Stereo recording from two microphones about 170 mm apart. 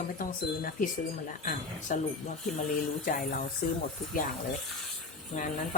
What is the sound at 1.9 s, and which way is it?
Speech, 50° left (ahead or behind).